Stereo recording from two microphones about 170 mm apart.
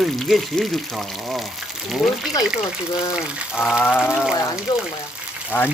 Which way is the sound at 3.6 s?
5° right (ahead or behind).